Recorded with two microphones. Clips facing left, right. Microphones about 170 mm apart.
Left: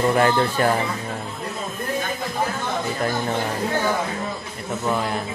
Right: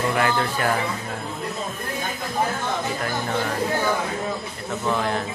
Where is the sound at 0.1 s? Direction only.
35° left (ahead or behind).